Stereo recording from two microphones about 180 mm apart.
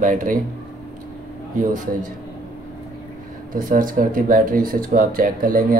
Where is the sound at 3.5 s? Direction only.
50° right (ahead or behind).